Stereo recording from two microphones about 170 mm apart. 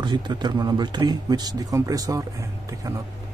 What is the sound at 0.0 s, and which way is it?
Speech, 25° right (ahead or behind).